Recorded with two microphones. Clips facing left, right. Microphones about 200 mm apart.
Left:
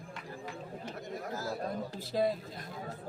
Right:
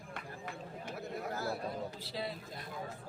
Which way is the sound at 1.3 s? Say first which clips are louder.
Left 1 dB; 60° right (ahead or behind).